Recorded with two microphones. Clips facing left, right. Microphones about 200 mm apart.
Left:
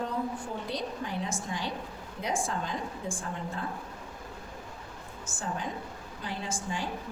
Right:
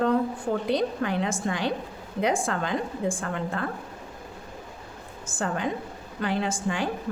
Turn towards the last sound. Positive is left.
turn(degrees=-70)  # may be behind; listen again after turning